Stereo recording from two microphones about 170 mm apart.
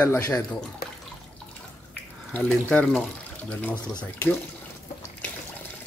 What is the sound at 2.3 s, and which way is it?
Speech, 5° left (ahead or behind).